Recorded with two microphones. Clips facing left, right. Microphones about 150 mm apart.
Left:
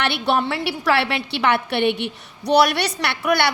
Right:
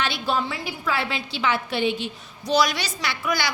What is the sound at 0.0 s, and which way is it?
A woman's voice, 65° left (ahead or behind).